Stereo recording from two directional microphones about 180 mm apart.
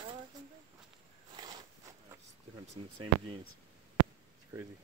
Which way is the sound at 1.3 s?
20° right (ahead or behind).